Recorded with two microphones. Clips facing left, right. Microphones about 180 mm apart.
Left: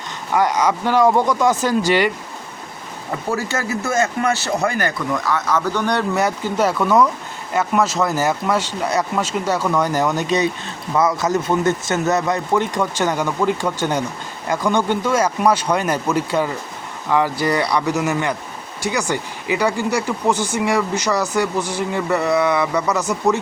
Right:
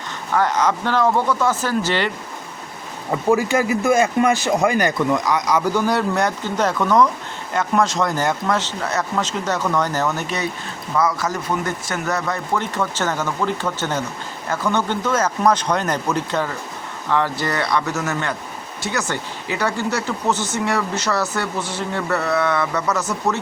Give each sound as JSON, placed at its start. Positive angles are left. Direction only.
{"t": 0.3, "sound": "speech", "side_deg": 10}
{"t": 3.3, "sound": "speech", "side_deg": -15}